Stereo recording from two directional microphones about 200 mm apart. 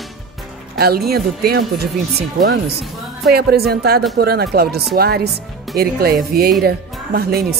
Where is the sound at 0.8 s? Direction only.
50° right (ahead or behind).